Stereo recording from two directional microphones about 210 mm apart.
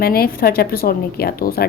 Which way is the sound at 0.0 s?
45° left (ahead or behind).